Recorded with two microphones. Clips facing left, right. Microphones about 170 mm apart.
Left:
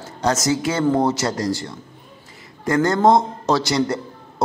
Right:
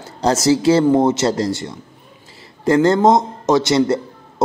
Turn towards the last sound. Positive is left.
turn(degrees=-25)  # may be behind; listen again after turning